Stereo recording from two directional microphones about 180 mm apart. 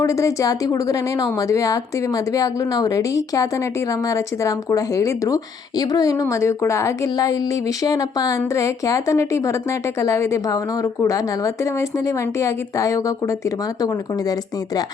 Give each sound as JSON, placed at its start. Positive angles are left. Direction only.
{"t": 0.0, "sound": "a woman's voice", "side_deg": 15}